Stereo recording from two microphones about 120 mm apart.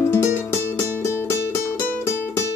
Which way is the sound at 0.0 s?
20° left (ahead or behind).